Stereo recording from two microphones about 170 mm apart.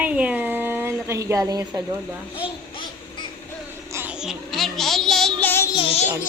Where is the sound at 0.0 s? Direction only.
10° right (ahead or behind).